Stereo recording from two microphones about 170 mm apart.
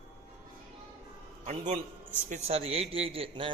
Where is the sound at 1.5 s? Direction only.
45° right (ahead or behind).